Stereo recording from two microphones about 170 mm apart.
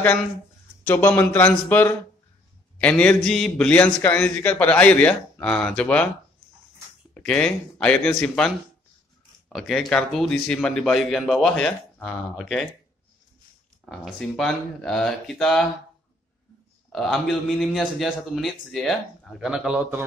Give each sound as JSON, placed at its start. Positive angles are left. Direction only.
{"t": 0.8, "sound": "a man's voice", "side_deg": 10}
{"t": 7.2, "sound": "a man's voice", "side_deg": 5}
{"t": 13.8, "sound": "a man's voice", "side_deg": 0}
{"t": 16.9, "sound": "a man's voice", "side_deg": 0}